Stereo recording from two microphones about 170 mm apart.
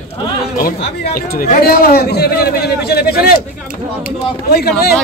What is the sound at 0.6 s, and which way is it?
Speech, 60° left (ahead or behind).